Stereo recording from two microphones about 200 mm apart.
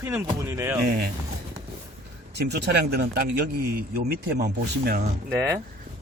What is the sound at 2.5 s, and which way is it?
Speech, 55° right (ahead or behind).